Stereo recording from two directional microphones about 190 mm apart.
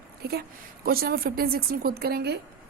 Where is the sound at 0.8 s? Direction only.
50° right (ahead or behind).